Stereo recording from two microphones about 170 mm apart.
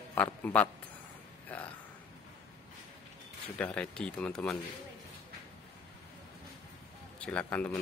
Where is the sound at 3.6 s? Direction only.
5° left (ahead or behind).